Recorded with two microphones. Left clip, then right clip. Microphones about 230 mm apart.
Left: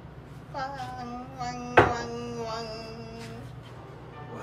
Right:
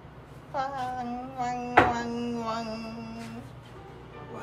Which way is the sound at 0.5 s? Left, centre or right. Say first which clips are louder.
Right 4 dB; centre.